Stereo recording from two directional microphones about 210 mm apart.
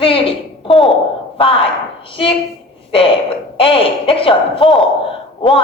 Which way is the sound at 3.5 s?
25° left (ahead or behind).